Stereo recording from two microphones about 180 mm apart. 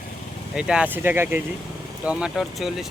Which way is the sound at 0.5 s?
5° right (ahead or behind).